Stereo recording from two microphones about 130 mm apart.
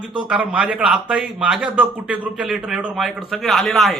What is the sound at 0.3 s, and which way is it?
A man's voice, 10° right (ahead or behind).